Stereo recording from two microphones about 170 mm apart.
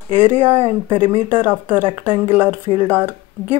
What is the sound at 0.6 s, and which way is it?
Speech, 30° right (ahead or behind).